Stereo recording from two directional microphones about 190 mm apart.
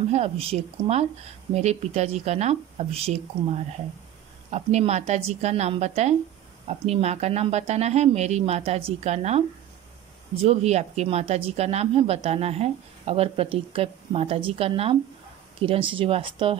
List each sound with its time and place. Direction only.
0.1 s speech: 35° right (ahead or behind)